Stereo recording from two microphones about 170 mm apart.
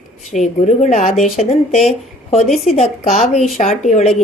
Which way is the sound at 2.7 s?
40° left (ahead or behind).